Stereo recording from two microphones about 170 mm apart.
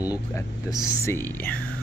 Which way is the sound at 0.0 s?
20° left (ahead or behind).